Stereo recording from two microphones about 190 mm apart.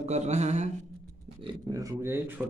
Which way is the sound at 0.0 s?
35° right (ahead or behind).